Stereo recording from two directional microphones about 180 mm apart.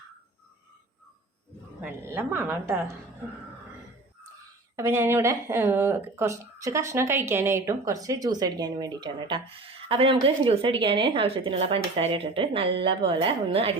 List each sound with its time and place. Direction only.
1.8 s a woman's voice: 10° right (ahead or behind)
4.8 s speech: 15° right (ahead or behind); by 13.7 s 30° right (ahead or behind)